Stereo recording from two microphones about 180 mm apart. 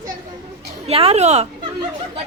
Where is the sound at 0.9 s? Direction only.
35° right (ahead or behind).